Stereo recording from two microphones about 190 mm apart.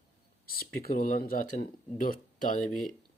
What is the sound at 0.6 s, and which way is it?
Speech, 50° left (ahead or behind).